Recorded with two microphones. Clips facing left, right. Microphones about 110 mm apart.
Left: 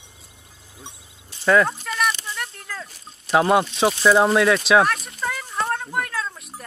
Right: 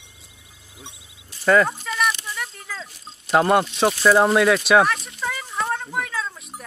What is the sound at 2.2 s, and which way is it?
Sheep, centre (ahead or behind).